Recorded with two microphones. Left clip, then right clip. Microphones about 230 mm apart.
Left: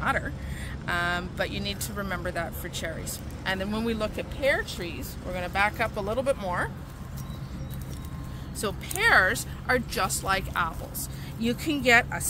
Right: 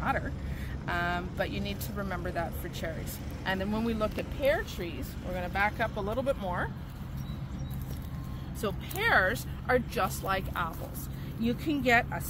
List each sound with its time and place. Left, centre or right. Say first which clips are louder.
0.0 s a woman's voice: left 4 dB; centre
5.3 s speech: left 4 dB; centre
8.5 s speech: left 4 dB; centre
9.7 s speech: left 2 dB; centre